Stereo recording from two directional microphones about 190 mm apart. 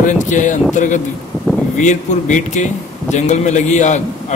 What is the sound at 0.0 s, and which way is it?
A man's voice, 40° left (ahead or behind).